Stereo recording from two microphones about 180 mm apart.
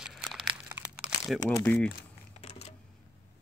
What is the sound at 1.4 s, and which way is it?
Speech, 20° left (ahead or behind).